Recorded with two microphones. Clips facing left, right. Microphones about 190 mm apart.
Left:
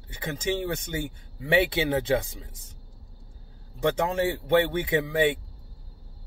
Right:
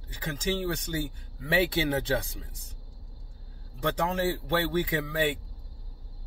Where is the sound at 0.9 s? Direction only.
20° left (ahead or behind).